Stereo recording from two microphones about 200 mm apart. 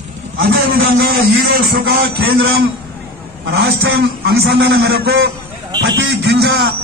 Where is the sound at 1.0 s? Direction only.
50° right (ahead or behind).